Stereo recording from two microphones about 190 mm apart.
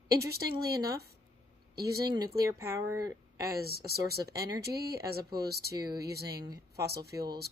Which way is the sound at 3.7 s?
55° right (ahead or behind).